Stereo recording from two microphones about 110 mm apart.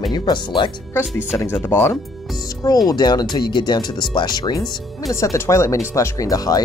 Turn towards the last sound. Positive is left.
turn(degrees=35)  # may be behind; listen again after turning